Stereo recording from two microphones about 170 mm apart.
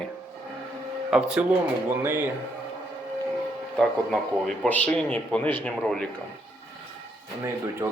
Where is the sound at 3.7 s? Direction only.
5° left (ahead or behind).